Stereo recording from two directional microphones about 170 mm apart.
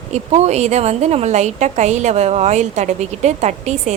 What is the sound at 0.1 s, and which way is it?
A woman's voice, 40° right (ahead or behind).